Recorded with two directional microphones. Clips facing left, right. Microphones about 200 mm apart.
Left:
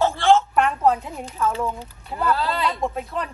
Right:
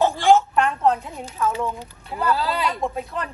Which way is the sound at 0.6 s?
Centre (ahead or behind).